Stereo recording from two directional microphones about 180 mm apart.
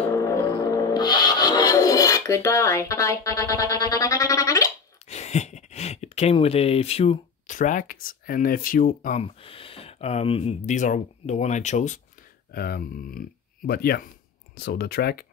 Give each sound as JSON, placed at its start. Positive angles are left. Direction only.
{"t": 0.1, "sound": "rub", "side_deg": 15}
{"t": 5.1, "sound": "speech", "side_deg": 40}
{"t": 9.2, "sound": "speech", "side_deg": 30}
{"t": 12.5, "sound": "speech", "side_deg": 55}